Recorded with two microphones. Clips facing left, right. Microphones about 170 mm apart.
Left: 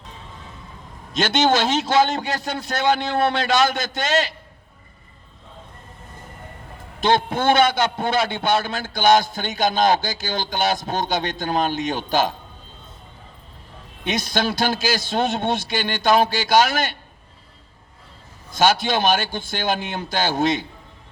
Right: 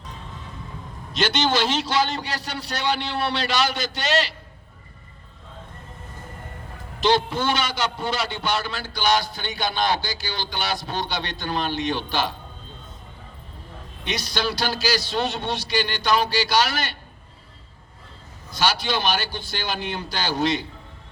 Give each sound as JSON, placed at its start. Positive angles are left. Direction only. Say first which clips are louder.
{"t": 1.1, "sound": "a man's voice", "louder": "left 4 dB", "side_deg": 50}
{"t": 7.0, "sound": "a man's voice", "louder": "left 2 dB", "side_deg": 50}
{"t": 14.0, "sound": "a man's voice", "louder": "left 4 dB", "side_deg": 50}
{"t": 18.5, "sound": "a man's voice", "louder": "left 5 dB", "side_deg": 50}